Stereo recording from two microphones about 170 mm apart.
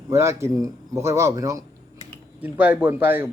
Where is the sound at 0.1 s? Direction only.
15° right (ahead or behind).